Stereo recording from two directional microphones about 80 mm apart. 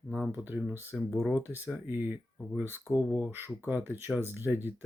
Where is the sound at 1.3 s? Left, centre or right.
Centre.